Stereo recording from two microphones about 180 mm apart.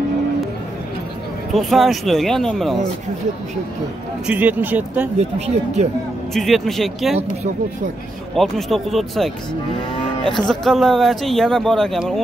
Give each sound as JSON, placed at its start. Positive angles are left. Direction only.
{"t": 1.5, "sound": "speech", "side_deg": 0}
{"t": 4.3, "sound": "speech", "side_deg": -10}
{"t": 5.5, "sound": "speech", "side_deg": -40}
{"t": 6.3, "sound": "speech", "side_deg": 0}
{"t": 8.4, "sound": "speech", "side_deg": 0}